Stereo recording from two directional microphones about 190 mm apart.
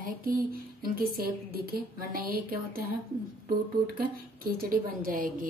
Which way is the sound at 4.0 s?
50° right (ahead or behind).